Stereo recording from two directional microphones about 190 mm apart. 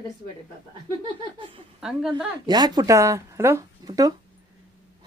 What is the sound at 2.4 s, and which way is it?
Speech, 20° right (ahead or behind).